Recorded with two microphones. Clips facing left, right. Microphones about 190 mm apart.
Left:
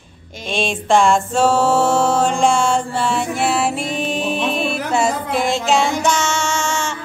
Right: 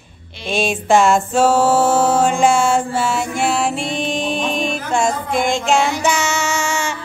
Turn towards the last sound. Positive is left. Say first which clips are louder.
# right 1 dB
turn(degrees=-10)  # may be behind; listen again after turning